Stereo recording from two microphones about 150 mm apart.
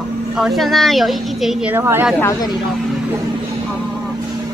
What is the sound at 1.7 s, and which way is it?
Speech, 15° right (ahead or behind).